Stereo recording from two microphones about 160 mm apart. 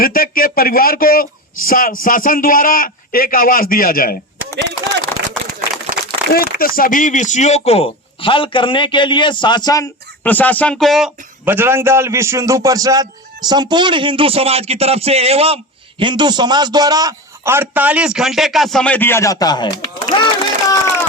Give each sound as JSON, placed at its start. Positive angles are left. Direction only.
{"t": 0.0, "sound": "speech", "side_deg": 65}
{"t": 5.1, "sound": "a sound", "side_deg": 10}
{"t": 6.3, "sound": "speech", "side_deg": 65}
{"t": 10.2, "sound": "speech", "side_deg": 10}
{"t": 11.4, "sound": "a man's voice", "side_deg": -15}